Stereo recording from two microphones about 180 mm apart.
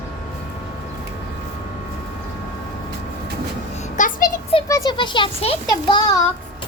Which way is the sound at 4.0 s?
45° left (ahead or behind).